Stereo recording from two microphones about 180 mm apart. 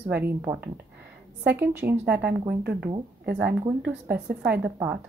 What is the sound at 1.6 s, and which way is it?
Speech, 10° right (ahead or behind).